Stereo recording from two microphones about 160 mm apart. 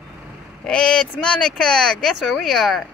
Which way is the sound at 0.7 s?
5° left (ahead or behind).